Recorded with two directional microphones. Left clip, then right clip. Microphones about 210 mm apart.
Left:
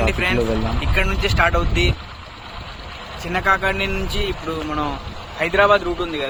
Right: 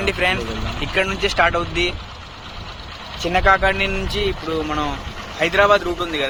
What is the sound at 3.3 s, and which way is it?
Speech, centre (ahead or behind).